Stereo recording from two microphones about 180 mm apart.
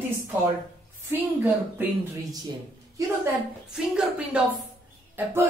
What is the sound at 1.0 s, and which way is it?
Speech, 10° right (ahead or behind).